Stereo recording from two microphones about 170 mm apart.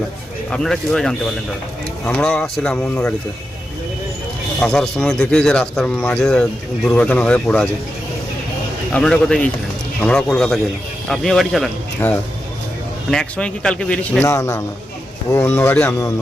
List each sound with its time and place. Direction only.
0.5 s a man's voice: 5° left (ahead or behind)
4.6 s a man's voice: 5° left (ahead or behind)
8.9 s a man's voice: 5° left (ahead or behind)
13.1 s a man's voice: 5° left (ahead or behind)